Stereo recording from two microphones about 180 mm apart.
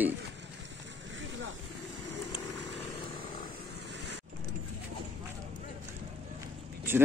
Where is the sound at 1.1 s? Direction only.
90° right.